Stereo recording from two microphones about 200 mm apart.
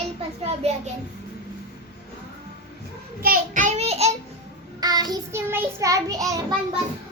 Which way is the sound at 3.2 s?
45° right (ahead or behind).